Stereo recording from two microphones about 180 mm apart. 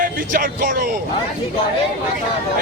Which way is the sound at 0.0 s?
50° right (ahead or behind).